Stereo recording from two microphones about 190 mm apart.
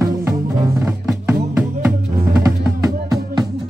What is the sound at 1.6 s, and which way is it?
Music, 5° right (ahead or behind).